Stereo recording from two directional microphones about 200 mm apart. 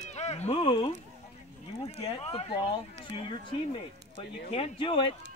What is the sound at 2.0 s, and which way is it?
Speech, 30° left (ahead or behind).